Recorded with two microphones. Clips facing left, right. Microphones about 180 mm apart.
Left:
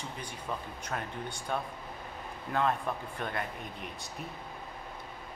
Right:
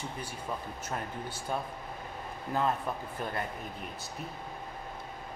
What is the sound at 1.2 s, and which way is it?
Speech, 5° right (ahead or behind).